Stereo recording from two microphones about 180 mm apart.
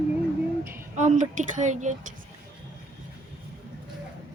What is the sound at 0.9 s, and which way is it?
Speech, 45° right (ahead or behind).